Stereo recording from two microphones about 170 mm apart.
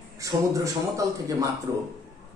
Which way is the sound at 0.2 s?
20° right (ahead or behind).